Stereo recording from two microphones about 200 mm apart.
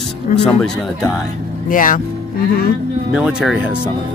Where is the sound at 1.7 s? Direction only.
40° left (ahead or behind).